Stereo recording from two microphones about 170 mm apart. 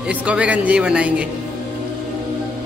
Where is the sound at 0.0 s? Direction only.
10° right (ahead or behind).